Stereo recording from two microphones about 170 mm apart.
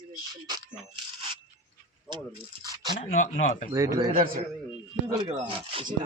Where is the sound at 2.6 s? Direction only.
25° right (ahead or behind).